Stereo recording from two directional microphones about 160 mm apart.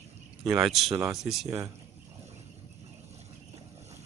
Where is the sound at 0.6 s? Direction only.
Centre (ahead or behind).